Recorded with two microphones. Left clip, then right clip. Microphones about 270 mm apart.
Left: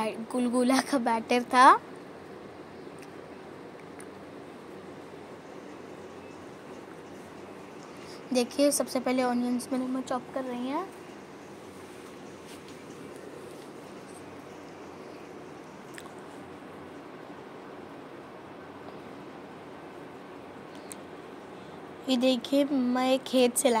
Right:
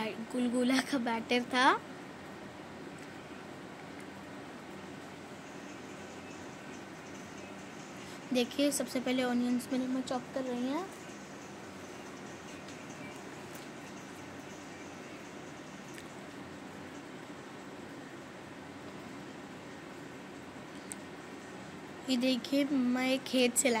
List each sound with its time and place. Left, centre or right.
0.0 s speech: centre
8.3 s speech: centre
22.0 s speech: centre